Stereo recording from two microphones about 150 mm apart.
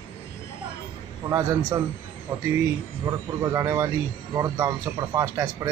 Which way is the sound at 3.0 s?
20° right (ahead or behind).